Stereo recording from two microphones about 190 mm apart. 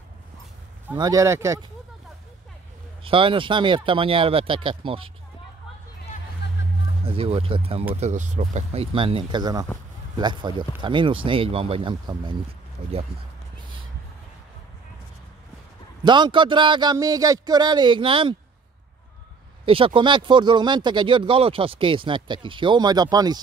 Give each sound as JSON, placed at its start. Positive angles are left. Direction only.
{"t": 0.9, "sound": "speech", "side_deg": -20}
{"t": 3.0, "sound": "speech", "side_deg": -25}
{"t": 6.4, "sound": "music", "side_deg": 65}
{"t": 7.1, "sound": "speech", "side_deg": -30}
{"t": 16.0, "sound": "speech", "side_deg": -25}
{"t": 19.6, "sound": "speech", "side_deg": -30}